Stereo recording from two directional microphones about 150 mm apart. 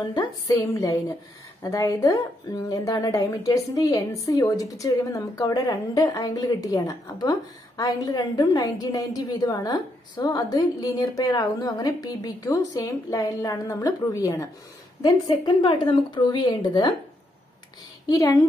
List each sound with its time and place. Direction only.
0.7 s a woman's voice: 20° left (ahead or behind)
18.0 s a woman's voice: 20° left (ahead or behind)